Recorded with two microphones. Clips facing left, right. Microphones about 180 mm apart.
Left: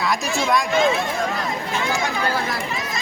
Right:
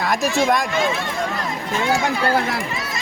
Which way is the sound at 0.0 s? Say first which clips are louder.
Right 3 dB; 50° right (ahead or behind).